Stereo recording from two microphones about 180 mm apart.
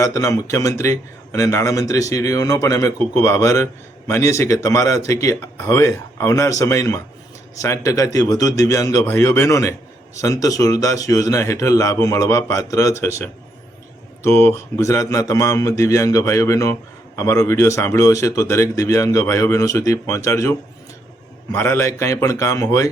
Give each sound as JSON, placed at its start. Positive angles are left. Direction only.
{"t": 0.0, "sound": "a man's voice", "side_deg": 20}